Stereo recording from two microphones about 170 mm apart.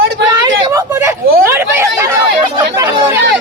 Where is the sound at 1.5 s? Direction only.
15° right (ahead or behind).